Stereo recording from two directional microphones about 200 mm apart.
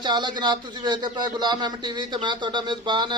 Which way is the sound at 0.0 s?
20° right (ahead or behind).